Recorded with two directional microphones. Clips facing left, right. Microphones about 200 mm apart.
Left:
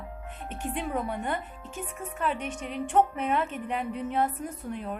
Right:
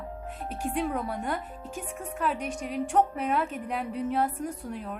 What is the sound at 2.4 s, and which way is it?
Speech, 40° right (ahead or behind).